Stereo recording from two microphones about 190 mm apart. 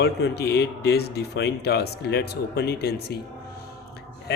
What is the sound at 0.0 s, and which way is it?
Speech, 60° left (ahead or behind).